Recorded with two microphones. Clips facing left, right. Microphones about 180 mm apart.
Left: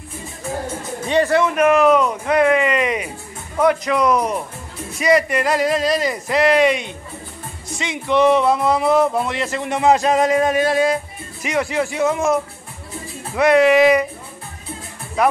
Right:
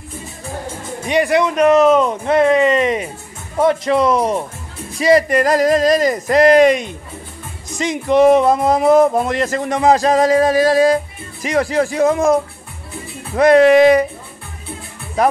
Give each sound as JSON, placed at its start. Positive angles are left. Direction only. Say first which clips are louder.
{"t": 1.0, "sound": "speech", "louder": "right 1 dB", "side_deg": -15}
{"t": 13.4, "sound": "speech", "louder": "right 4 dB", "side_deg": -40}